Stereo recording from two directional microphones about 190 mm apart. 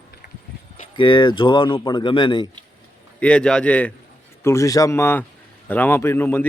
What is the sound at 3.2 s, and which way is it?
A man's voice, 5° left (ahead or behind).